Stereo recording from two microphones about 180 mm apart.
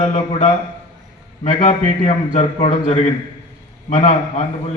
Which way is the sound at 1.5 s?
40° left (ahead or behind).